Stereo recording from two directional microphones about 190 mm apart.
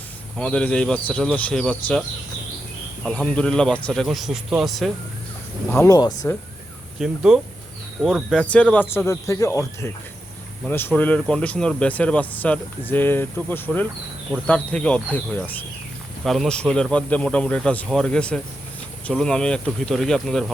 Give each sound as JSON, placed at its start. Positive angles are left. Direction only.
{"t": 0.3, "sound": "speech", "side_deg": 5}
{"t": 5.7, "sound": "speech", "side_deg": 15}
{"t": 7.0, "sound": "speech", "side_deg": 0}